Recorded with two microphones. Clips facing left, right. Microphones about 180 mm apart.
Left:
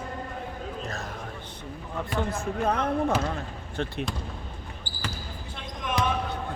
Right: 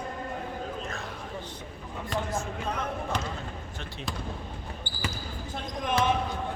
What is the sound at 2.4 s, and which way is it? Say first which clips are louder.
Speech: left 6 dB; 60° left (ahead or behind).